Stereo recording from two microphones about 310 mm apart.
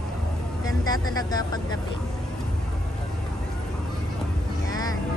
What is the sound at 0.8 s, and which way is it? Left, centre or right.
Speech, centre.